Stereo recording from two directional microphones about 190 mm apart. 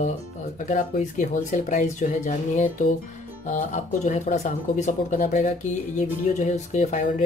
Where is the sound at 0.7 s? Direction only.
40° left (ahead or behind).